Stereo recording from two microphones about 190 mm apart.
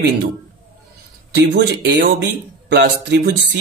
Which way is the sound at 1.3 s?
65° right (ahead or behind).